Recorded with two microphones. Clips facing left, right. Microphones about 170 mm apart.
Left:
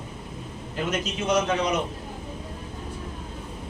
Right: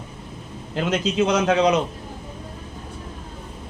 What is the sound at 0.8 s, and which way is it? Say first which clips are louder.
A man's voice: right 7 dB; 75° right (ahead or behind).